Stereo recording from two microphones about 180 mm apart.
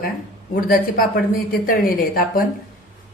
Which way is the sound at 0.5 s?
55° left (ahead or behind).